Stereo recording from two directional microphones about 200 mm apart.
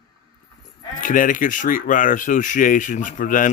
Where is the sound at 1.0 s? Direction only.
40° left (ahead or behind).